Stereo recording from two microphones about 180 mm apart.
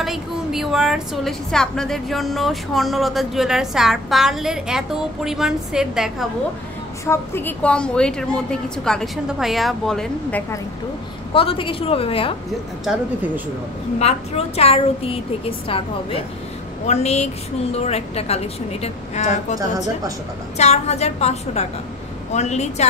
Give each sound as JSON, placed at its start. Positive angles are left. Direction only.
{"t": 0.0, "sound": "a woman's voice", "side_deg": 0}
{"t": 7.1, "sound": "a woman's voice", "side_deg": 10}
{"t": 11.3, "sound": "a woman's voice", "side_deg": 30}
{"t": 13.9, "sound": "a woman's voice", "side_deg": 35}